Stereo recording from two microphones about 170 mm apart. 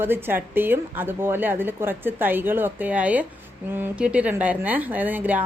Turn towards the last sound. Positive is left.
turn(degrees=-10)  # may be behind; listen again after turning